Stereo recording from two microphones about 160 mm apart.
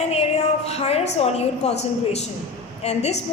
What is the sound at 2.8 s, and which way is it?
Speech, 45° left (ahead or behind).